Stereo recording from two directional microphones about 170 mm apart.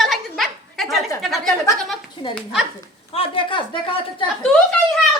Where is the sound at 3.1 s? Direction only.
30° left (ahead or behind).